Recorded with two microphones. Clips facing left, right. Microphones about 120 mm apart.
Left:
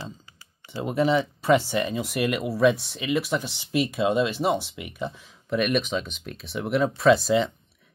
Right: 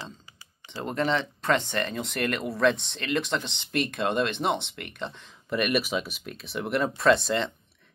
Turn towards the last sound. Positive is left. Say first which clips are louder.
# left 3 dB
turn(degrees=5)  # may be behind; listen again after turning